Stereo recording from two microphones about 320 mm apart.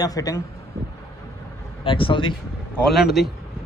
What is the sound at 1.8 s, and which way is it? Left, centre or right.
Speech, centre.